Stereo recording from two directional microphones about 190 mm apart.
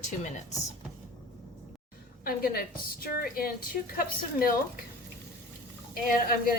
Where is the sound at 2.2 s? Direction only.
50° left (ahead or behind).